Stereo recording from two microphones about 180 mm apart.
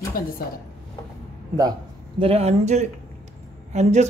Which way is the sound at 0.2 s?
55° left (ahead or behind).